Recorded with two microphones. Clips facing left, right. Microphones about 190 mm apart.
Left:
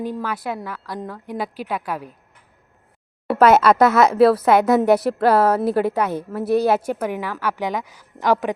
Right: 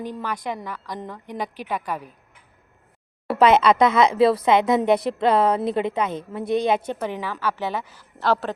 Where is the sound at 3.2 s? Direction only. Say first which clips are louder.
Left 2 dB; centre (ahead or behind).